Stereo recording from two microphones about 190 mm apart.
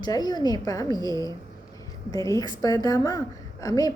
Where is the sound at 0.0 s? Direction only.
20° left (ahead or behind).